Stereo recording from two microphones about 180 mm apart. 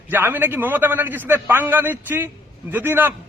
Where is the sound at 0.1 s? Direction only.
10° right (ahead or behind).